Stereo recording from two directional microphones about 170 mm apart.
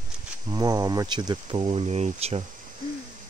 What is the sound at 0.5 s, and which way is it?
Speech, 25° right (ahead or behind).